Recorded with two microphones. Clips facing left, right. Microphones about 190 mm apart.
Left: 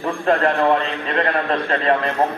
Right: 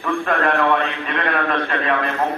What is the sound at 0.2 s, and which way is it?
Speech, 35° left (ahead or behind).